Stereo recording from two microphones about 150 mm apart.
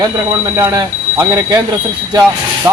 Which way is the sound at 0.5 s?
25° right (ahead or behind).